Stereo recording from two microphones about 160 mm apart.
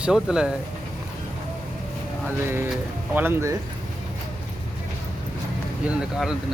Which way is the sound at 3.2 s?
15° right (ahead or behind).